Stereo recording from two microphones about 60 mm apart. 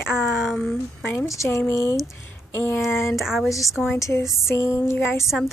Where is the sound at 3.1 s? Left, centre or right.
Centre.